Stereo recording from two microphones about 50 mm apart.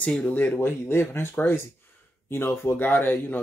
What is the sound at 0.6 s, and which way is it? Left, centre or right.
Speech, left.